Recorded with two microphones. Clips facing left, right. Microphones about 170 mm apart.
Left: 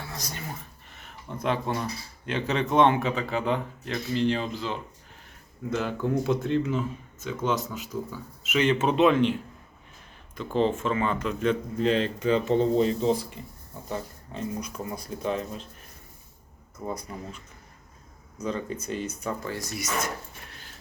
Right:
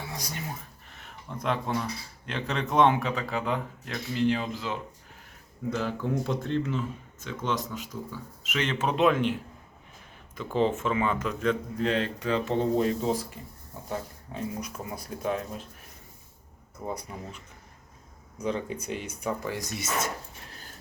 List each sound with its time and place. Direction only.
0.1 s a sound: 15° right (ahead or behind)
0.9 s speech: centre (ahead or behind)
10.3 s speech: 10° right (ahead or behind)
16.8 s speech: 10° right (ahead or behind)
18.3 s speech: 15° right (ahead or behind)
20.5 s a sound: 40° right (ahead or behind)